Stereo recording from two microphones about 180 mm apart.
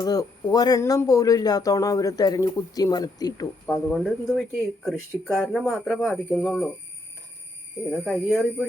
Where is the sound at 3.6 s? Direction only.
Centre (ahead or behind).